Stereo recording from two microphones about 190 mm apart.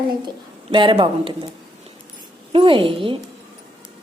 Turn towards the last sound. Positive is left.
turn(degrees=-25)  # may be behind; listen again after turning